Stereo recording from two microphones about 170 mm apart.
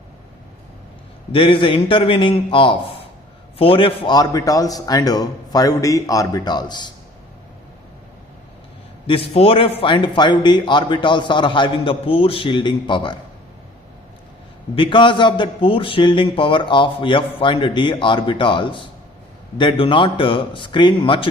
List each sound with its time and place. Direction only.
1.3 s a man's voice: 30° left (ahead or behind)
9.0 s speech: 35° left (ahead or behind)
14.8 s speech: 30° left (ahead or behind)